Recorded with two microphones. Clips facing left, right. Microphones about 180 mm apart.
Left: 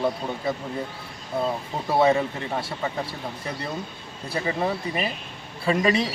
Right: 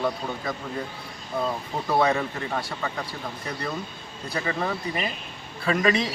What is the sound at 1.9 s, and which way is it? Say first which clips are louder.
Speech: left 3 dB; 25° left (ahead or behind).